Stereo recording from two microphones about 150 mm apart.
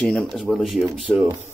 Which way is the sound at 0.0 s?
5° left (ahead or behind).